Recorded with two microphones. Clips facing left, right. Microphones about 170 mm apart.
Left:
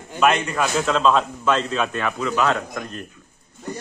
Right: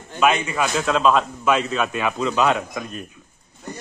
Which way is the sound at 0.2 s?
5° right (ahead or behind).